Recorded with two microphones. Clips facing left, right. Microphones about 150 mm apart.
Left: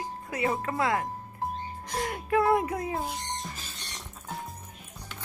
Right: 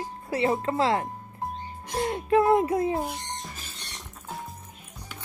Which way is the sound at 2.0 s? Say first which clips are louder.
Right 4 dB; 25° right (ahead or behind).